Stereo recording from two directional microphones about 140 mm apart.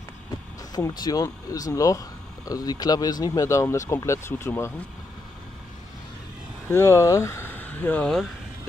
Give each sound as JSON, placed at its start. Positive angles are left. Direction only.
{"t": 0.7, "sound": "speech", "side_deg": 30}
{"t": 6.7, "sound": "speech", "side_deg": 20}